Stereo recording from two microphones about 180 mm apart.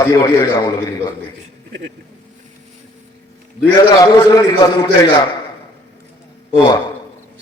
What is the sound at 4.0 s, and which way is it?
A man's voice, 20° left (ahead or behind).